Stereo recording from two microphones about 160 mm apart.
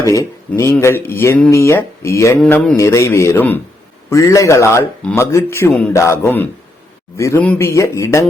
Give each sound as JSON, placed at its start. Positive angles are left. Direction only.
{"t": 0.1, "sound": "speech", "side_deg": 20}
{"t": 2.4, "sound": "mantra", "side_deg": 5}
{"t": 2.7, "sound": "a man's voice", "side_deg": 20}